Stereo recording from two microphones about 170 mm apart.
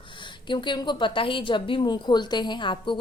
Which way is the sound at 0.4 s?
30° left (ahead or behind).